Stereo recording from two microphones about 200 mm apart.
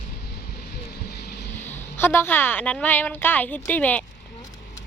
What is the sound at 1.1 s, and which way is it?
Vehicle, 55° left (ahead or behind).